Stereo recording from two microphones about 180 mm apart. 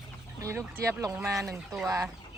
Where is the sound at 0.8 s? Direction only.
15° right (ahead or behind).